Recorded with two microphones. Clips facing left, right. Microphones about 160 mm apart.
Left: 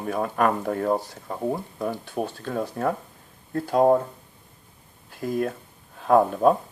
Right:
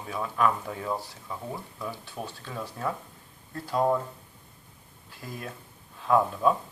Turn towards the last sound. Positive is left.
turn(degrees=55)  # may be behind; listen again after turning